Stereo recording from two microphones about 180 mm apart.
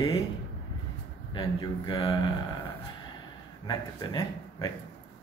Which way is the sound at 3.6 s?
25° left (ahead or behind).